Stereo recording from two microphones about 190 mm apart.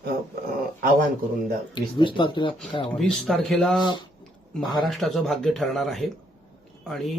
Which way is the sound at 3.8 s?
25° left (ahead or behind).